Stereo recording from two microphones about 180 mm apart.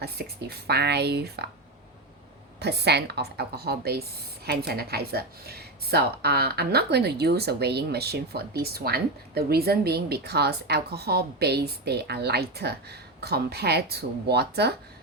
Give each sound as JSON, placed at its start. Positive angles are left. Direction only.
{"t": 0.0, "sound": "speech", "side_deg": -60}
{"t": 2.6, "sound": "speech", "side_deg": -65}